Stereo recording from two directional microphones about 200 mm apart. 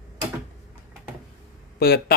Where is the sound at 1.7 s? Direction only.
55° left (ahead or behind).